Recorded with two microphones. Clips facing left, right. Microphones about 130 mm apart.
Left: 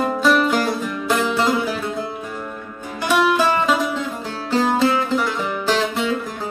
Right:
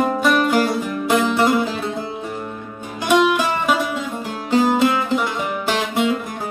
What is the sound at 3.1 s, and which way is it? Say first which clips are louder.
Music: right 1 dB; 15° right (ahead or behind).